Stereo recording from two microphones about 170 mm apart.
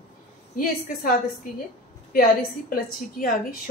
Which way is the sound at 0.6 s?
55° left (ahead or behind).